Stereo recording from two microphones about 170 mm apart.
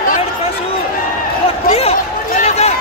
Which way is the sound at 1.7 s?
35° left (ahead or behind).